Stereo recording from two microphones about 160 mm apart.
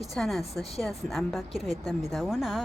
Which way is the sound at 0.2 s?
Centre (ahead or behind).